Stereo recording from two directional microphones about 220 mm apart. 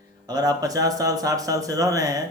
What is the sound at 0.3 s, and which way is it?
A man's voice, 15° right (ahead or behind).